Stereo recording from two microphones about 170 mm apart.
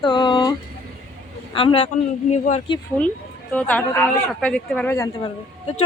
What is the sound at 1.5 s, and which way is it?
Speech, 30° left (ahead or behind).